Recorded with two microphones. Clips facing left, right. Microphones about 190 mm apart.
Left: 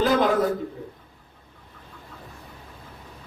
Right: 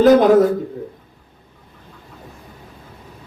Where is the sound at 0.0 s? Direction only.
45° right (ahead or behind).